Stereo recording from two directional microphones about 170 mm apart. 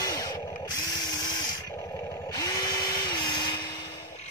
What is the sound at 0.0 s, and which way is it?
Tools, 20° left (ahead or behind).